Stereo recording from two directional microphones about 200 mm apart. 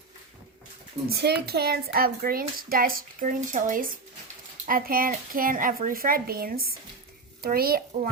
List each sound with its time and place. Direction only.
1.0 s speech: 55° right (ahead or behind)